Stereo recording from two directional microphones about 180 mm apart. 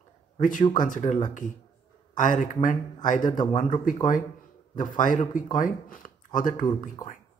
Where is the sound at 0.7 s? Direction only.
45° left (ahead or behind).